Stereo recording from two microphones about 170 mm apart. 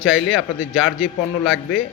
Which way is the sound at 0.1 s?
Centre (ahead or behind).